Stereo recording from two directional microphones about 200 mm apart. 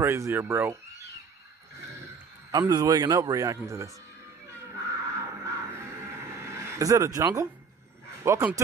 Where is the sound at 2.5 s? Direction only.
20° right (ahead or behind).